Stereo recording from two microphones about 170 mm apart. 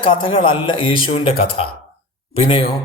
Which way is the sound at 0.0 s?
30° left (ahead or behind).